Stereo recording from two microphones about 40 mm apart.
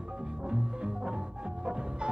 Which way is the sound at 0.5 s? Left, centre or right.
Right.